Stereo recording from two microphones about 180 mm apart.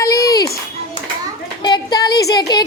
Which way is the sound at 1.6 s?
25° left (ahead or behind).